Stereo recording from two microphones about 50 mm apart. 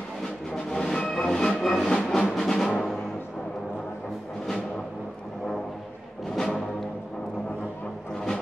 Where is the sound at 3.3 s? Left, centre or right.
Centre.